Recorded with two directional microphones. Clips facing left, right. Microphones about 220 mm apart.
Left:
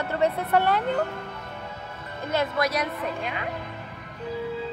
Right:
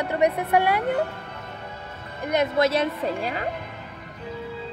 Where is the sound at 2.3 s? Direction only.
25° right (ahead or behind).